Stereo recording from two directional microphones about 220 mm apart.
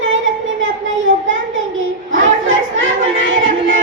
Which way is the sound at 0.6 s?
60° right (ahead or behind).